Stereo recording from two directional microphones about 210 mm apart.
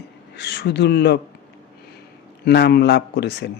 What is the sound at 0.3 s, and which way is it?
Speech, 55° left (ahead or behind).